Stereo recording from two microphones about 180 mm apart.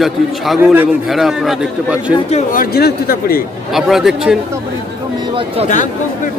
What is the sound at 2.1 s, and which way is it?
Speech, 35° left (ahead or behind).